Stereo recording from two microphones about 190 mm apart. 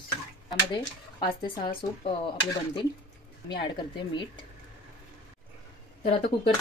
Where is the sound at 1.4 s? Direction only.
25° left (ahead or behind).